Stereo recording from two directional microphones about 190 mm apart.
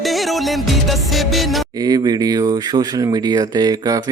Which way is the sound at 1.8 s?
20° right (ahead or behind).